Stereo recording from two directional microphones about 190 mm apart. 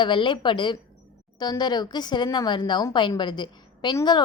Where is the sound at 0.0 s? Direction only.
25° left (ahead or behind).